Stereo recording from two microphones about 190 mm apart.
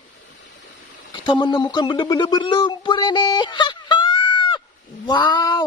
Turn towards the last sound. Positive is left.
turn(degrees=20)  # may be behind; listen again after turning